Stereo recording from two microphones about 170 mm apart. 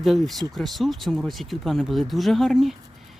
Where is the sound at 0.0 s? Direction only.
Centre (ahead or behind).